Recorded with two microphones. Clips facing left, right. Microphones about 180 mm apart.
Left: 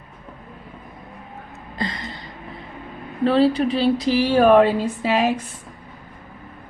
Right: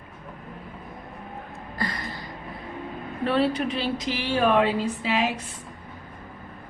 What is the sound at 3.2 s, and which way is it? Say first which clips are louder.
Speech: left 6 dB; 30° left (ahead or behind).